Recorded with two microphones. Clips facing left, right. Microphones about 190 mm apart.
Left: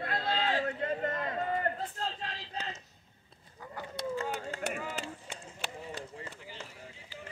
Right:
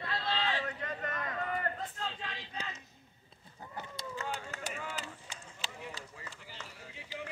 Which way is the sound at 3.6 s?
25° right (ahead or behind).